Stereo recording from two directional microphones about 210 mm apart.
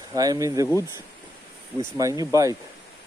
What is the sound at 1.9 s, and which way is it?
Speech, 15° right (ahead or behind).